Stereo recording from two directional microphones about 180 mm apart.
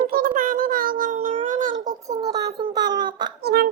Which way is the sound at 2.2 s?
20° right (ahead or behind).